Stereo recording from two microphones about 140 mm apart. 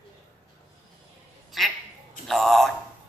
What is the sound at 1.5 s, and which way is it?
Quack, centre (ahead or behind).